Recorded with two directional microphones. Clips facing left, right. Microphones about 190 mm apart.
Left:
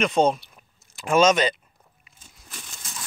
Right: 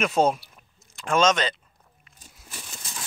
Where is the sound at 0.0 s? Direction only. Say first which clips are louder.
Left 1 dB; 5° right (ahead or behind).